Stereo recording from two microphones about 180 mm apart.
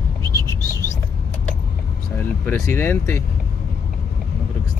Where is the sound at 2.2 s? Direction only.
10° left (ahead or behind).